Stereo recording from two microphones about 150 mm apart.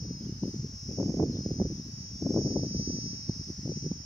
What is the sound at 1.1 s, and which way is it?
Cricket, 20° left (ahead or behind).